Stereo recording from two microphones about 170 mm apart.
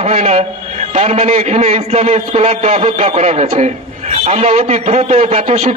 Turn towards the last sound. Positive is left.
turn(degrees=-35)  # may be behind; listen again after turning